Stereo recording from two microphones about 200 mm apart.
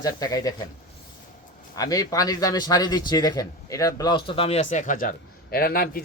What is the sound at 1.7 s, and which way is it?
A man's voice, 15° left (ahead or behind).